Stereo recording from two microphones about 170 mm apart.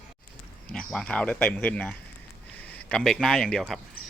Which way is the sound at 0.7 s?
5° left (ahead or behind).